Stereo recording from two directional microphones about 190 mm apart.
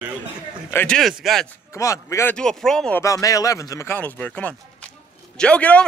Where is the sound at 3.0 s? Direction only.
15° left (ahead or behind).